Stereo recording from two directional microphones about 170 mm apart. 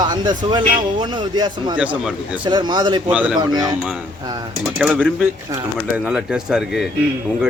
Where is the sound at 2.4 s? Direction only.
25° right (ahead or behind).